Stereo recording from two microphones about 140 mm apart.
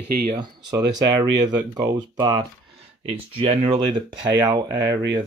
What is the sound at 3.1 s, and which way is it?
Speech, 45° right (ahead or behind).